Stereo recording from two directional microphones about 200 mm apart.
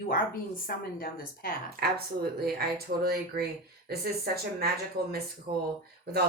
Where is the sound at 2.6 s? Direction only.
50° right (ahead or behind).